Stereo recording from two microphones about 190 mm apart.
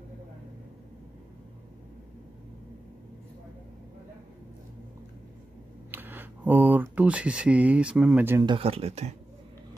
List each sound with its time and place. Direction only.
5.9 s speech: 10° right (ahead or behind)
8.5 s speech: 30° right (ahead or behind)